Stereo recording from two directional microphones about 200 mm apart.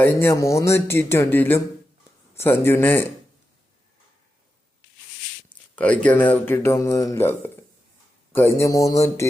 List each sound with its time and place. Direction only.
0.0 s speech: 10° left (ahead or behind)
5.7 s speech: 5° left (ahead or behind)